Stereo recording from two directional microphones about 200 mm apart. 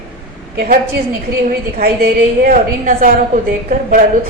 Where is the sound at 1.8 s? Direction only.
50° right (ahead or behind).